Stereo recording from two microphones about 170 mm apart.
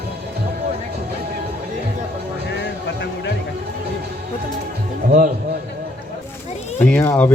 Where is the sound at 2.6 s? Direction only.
90° left.